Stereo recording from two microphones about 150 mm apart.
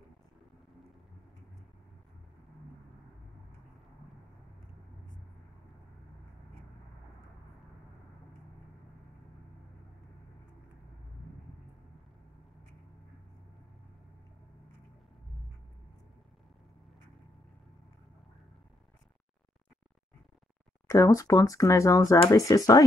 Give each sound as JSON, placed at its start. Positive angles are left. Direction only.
{"t": 20.8, "sound": "speech", "side_deg": 20}